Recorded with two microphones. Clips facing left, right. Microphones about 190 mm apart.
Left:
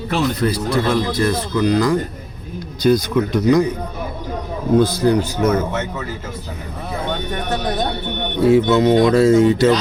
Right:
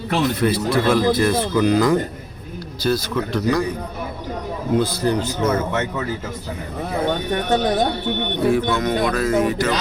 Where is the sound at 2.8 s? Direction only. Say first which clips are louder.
Left 6 dB; 15° left (ahead or behind).